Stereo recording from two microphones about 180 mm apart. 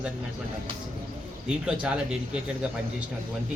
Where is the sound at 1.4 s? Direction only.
5° right (ahead or behind).